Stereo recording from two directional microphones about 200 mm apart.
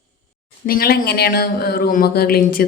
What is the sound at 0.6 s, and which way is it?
Speech, 50° left (ahead or behind).